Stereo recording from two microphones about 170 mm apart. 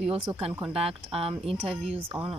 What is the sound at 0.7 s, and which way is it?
Speech, 35° right (ahead or behind).